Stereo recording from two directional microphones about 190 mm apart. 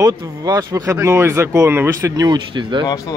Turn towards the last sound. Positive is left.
turn(degrees=20)  # may be behind; listen again after turning